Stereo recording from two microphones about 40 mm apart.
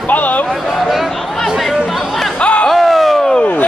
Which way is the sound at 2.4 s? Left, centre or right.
Left.